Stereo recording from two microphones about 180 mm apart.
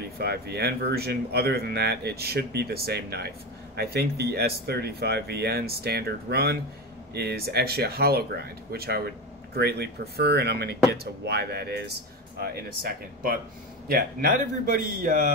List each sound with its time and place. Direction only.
0.2 s a man's voice: 65° right (ahead or behind)